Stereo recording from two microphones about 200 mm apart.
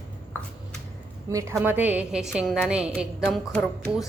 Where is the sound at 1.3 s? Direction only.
15° right (ahead or behind).